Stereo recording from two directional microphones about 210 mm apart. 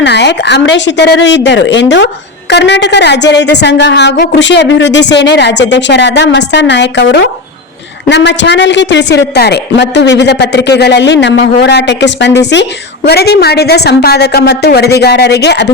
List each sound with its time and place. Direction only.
0.0 s a woman's voice: 55° left (ahead or behind)